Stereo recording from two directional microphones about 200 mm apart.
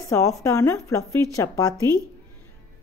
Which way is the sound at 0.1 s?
15° left (ahead or behind).